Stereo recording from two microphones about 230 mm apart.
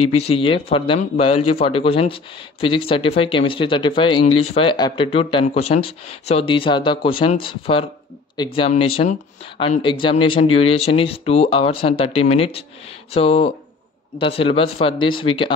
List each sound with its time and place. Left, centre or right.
0.3 s speech: left
4.3 s speech: left
4.6 s speech: centre